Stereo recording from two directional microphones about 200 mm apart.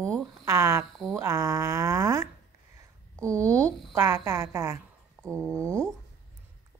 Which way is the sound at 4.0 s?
15° right (ahead or behind).